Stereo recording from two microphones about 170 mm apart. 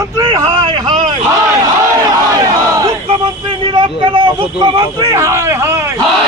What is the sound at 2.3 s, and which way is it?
A man's voice, 20° right (ahead or behind).